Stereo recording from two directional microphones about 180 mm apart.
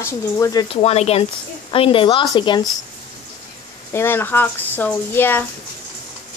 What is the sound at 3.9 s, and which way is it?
A woman's voice, 15° left (ahead or behind).